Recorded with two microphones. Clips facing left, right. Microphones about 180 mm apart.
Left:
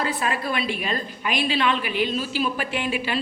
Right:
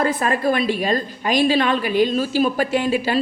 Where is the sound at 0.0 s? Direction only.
45° right (ahead or behind).